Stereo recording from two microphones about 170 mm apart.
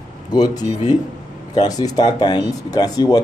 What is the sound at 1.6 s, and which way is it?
Speech, 25° left (ahead or behind).